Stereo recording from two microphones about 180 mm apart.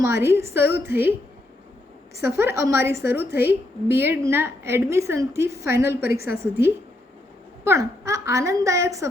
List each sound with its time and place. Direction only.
0.0 s a woman's voice: 15° right (ahead or behind)
2.2 s a woman's voice: 15° right (ahead or behind)